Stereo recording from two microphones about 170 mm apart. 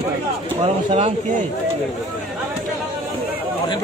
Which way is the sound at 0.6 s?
40° right (ahead or behind).